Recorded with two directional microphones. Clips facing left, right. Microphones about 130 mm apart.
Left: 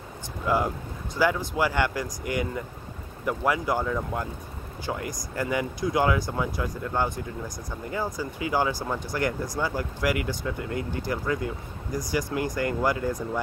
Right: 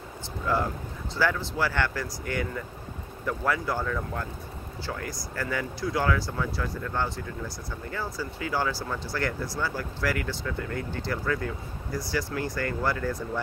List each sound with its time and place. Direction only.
0.5 s speech: 15° left (ahead or behind)